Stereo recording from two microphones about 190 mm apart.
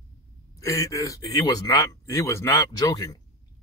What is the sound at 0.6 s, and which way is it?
Speech, 15° left (ahead or behind).